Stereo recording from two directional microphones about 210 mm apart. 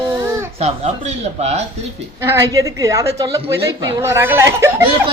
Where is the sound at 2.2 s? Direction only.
15° right (ahead or behind).